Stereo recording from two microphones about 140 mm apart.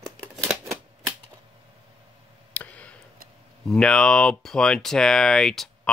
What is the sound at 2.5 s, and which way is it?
Tick, 10° left (ahead or behind).